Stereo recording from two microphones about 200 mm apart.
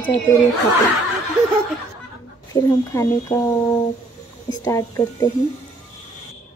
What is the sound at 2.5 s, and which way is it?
Speech, 15° left (ahead or behind).